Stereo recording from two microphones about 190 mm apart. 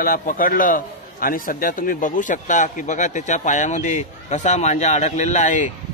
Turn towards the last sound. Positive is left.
turn(degrees=40)  # may be behind; listen again after turning